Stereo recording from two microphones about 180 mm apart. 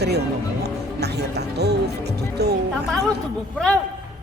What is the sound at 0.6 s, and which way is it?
Music, 65° right (ahead or behind).